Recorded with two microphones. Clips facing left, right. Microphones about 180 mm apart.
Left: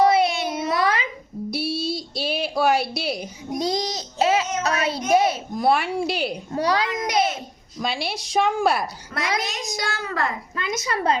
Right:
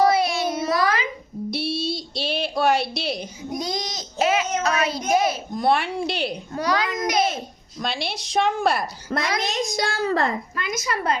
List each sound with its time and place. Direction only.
0.0 s child singing: 25° left (ahead or behind)
1.5 s a sound: 5° left (ahead or behind)
3.6 s child singing: 30° left (ahead or behind)
5.0 s a child's voice: 30° left (ahead or behind)
5.5 s a woman's voice: 5° left (ahead or behind)
6.5 s a child's voice: 30° left (ahead or behind)
7.8 s a woman's voice: 5° left (ahead or behind)
9.0 s a child's voice: 35° right (ahead or behind)
10.5 s a child's voice: 25° left (ahead or behind)